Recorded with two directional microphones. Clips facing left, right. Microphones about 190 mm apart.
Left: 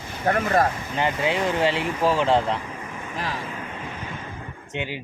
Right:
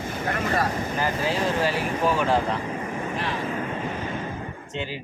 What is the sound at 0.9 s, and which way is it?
Speech, 20° left (ahead or behind).